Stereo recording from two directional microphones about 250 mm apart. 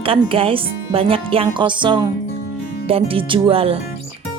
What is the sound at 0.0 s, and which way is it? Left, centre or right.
Speech, right.